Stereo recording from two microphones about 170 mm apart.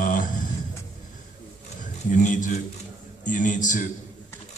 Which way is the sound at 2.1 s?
50° left (ahead or behind).